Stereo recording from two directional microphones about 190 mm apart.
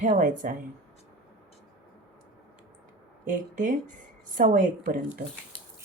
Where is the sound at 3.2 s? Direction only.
45° right (ahead or behind).